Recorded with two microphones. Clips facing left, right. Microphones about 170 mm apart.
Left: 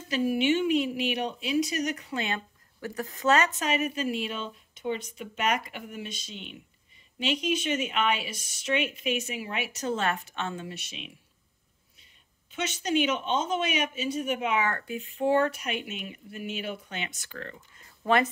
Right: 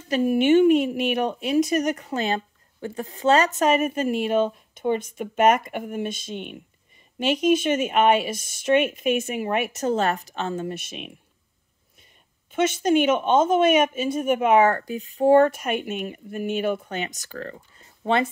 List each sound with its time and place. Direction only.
0.1 s speech: 45° right (ahead or behind); by 3.5 s 30° right (ahead or behind)
3.5 s speech: 50° right (ahead or behind)
12.4 s speech: 50° right (ahead or behind)
14.8 s speech: 35° right (ahead or behind)